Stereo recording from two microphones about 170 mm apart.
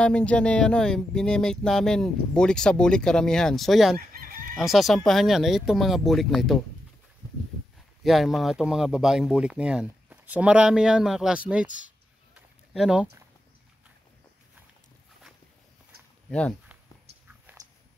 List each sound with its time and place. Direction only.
0.0 s speech: 5° left (ahead or behind)
4.1 s crowing: 60° right (ahead or behind)
4.6 s speech: centre (ahead or behind)
8.0 s speech: centre (ahead or behind)
12.4 s a sound: 5° right (ahead or behind)
16.3 s speech: 5° left (ahead or behind)